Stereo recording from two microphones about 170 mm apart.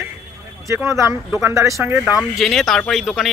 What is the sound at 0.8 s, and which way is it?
Speech, 15° right (ahead or behind).